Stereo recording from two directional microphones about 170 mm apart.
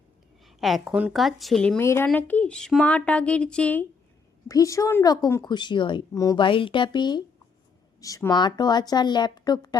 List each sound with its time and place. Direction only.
0.4 s speech: centre (ahead or behind)
4.4 s a woman's voice: 20° left (ahead or behind)